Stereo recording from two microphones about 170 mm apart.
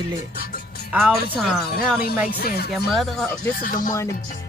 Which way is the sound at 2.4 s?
70° left (ahead or behind).